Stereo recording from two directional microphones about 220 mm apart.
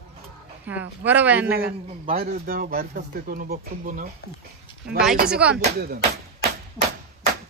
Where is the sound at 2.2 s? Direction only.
45° right (ahead or behind).